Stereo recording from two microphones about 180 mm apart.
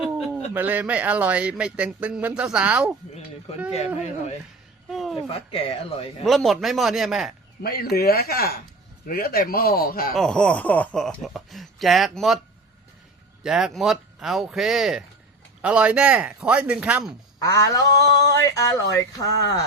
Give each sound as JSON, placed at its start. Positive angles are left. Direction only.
{"t": 0.5, "sound": "speech", "side_deg": -10}
{"t": 3.7, "sound": "speech", "side_deg": 35}
{"t": 4.9, "sound": "a sound", "side_deg": 0}
{"t": 5.3, "sound": "speech", "side_deg": 30}
{"t": 6.2, "sound": "speech", "side_deg": 0}
{"t": 7.6, "sound": "speech", "side_deg": 60}
{"t": 10.2, "sound": "speech", "side_deg": 5}
{"t": 13.4, "sound": "speech", "side_deg": -5}
{"t": 17.4, "sound": "speech", "side_deg": 20}